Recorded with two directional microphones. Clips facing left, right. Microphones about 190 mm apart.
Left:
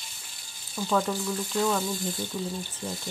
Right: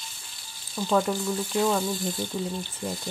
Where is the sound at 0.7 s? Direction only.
15° right (ahead or behind).